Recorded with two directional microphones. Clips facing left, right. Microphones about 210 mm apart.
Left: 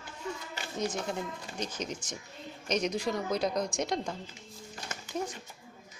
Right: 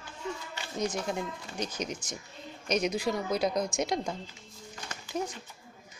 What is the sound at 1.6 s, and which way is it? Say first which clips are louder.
Speech: right 2 dB; 10° right (ahead or behind).